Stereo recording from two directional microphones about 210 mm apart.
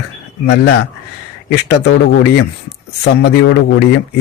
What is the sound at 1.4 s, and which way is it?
Speech, 50° left (ahead or behind).